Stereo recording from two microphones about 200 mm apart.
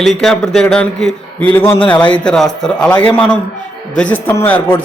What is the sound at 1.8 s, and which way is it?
Speech, 25° left (ahead or behind).